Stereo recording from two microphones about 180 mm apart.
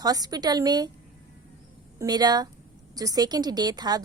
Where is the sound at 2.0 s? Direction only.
20° right (ahead or behind).